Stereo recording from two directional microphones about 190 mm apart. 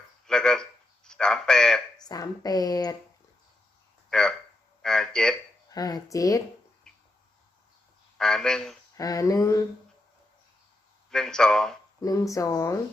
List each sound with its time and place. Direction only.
0.3 s a sound: 5° left (ahead or behind)
2.0 s speech: 20° left (ahead or behind)
4.1 s a sound: 5° left (ahead or behind)
5.7 s speech: 20° left (ahead or behind)
8.2 s speech: 5° left (ahead or behind)
9.0 s speech: 20° left (ahead or behind)
11.1 s speech: 5° left (ahead or behind)
11.9 s speech: 15° left (ahead or behind)